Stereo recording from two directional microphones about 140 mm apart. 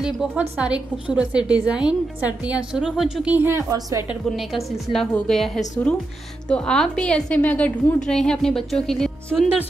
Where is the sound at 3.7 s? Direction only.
25° right (ahead or behind).